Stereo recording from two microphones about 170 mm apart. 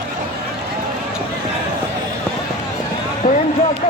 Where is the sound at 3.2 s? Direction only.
55° left (ahead or behind).